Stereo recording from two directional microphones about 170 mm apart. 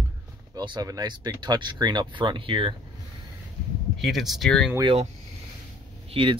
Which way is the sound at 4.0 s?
Centre (ahead or behind).